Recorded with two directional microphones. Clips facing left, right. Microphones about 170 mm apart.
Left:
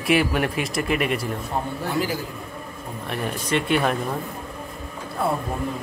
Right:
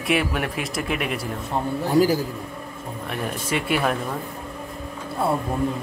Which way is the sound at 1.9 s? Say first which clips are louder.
Right 8 dB; 40° right (ahead or behind).